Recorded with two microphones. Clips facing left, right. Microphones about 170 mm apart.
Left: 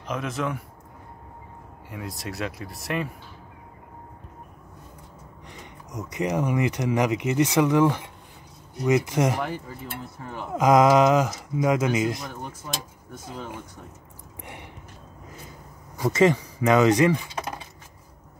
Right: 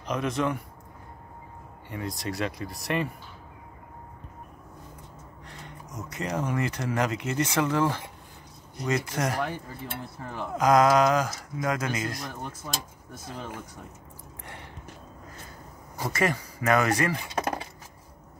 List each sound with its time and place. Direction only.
0.0 s speech: centre (ahead or behind)
1.9 s speech: centre (ahead or behind)
5.5 s speech: 15° left (ahead or behind)
10.6 s speech: 20° left (ahead or behind)
14.4 s a sound: 15° left (ahead or behind)
16.1 s speech: 20° left (ahead or behind)
17.4 s a sound: 60° right (ahead or behind)